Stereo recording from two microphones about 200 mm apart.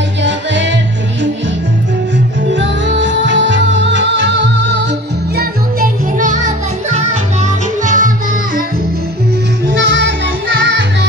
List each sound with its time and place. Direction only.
0.2 s music: 60° right (ahead or behind)
2.5 s music: 65° right (ahead or behind)
5.4 s music: 45° right (ahead or behind)
9.7 s music: 65° right (ahead or behind)